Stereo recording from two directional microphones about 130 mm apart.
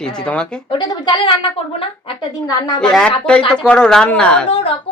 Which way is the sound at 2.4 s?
30° left (ahead or behind).